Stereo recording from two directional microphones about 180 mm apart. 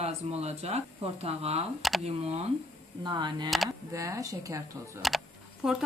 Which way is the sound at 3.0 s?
25° right (ahead or behind).